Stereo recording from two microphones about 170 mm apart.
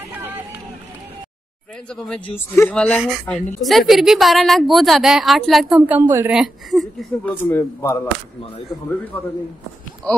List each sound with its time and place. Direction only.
1.9 s a woman's voice: 5° left (ahead or behind)
7.4 s a man's voice: 15° left (ahead or behind)